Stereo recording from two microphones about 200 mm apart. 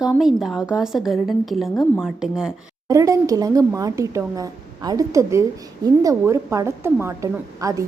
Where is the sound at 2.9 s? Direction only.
15° right (ahead or behind).